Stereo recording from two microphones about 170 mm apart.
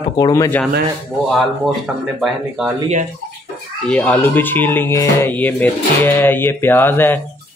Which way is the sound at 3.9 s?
5° left (ahead or behind).